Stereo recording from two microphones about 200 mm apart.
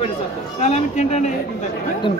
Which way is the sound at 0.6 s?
35° left (ahead or behind).